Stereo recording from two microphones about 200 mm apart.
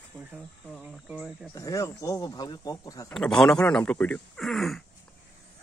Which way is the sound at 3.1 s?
Centre (ahead or behind).